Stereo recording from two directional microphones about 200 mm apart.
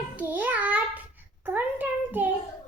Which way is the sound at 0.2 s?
10° right (ahead or behind).